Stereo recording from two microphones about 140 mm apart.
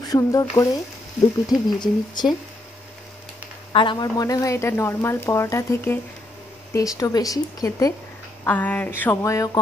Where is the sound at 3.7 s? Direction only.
35° left (ahead or behind).